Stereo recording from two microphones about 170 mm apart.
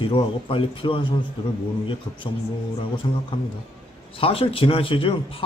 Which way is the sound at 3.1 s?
30° left (ahead or behind).